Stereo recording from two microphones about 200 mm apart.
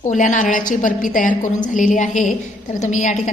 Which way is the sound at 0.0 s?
35° left (ahead or behind).